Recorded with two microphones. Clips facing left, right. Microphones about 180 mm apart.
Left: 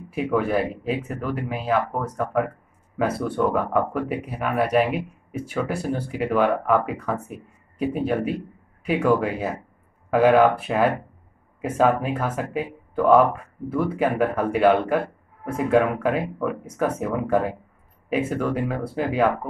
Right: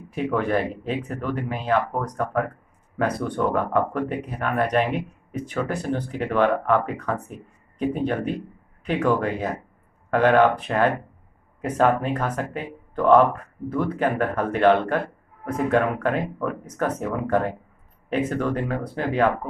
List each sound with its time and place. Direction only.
0.1 s speech: 5° left (ahead or behind)